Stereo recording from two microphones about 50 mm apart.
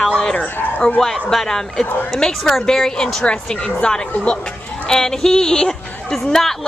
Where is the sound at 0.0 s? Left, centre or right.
Centre.